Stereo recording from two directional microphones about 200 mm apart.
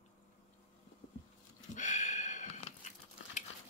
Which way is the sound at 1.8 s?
40° left (ahead or behind).